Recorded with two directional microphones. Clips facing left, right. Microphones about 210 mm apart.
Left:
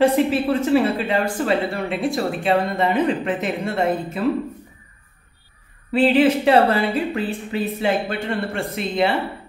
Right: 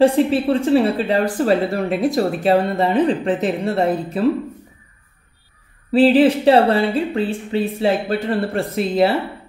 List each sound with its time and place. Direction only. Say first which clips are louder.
0.0 s speech: right 3 dB; 30° right (ahead or behind)
5.9 s speech: right 3 dB; 35° right (ahead or behind)